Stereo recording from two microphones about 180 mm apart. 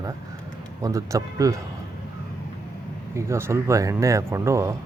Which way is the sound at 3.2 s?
15° right (ahead or behind).